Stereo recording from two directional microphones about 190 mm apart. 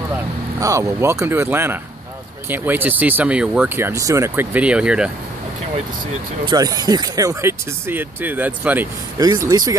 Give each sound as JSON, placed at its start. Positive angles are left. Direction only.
{"t": 0.6, "sound": "speech", "side_deg": -15}
{"t": 6.4, "sound": "speech", "side_deg": -20}
{"t": 9.2, "sound": "speech", "side_deg": -20}